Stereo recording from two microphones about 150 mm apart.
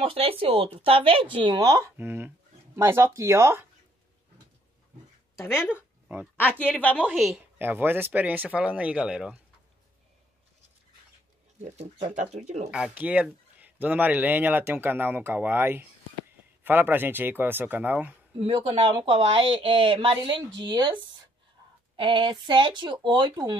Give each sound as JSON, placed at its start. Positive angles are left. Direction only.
{"t": 0.0, "sound": "a woman's voice", "side_deg": -40}
{"t": 5.4, "sound": "speech", "side_deg": -5}
{"t": 6.3, "sound": "a woman's voice", "side_deg": 10}
{"t": 7.2, "sound": "a woman's voice", "side_deg": 0}
{"t": 7.5, "sound": "speech", "side_deg": -15}
{"t": 11.6, "sound": "speech", "side_deg": -50}
{"t": 12.7, "sound": "speech", "side_deg": -10}
{"t": 18.4, "sound": "a woman's voice", "side_deg": -40}